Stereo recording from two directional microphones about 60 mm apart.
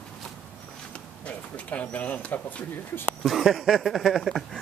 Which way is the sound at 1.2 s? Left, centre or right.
Left.